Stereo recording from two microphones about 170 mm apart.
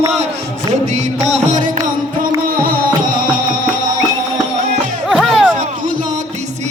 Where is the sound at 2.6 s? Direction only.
55° right (ahead or behind).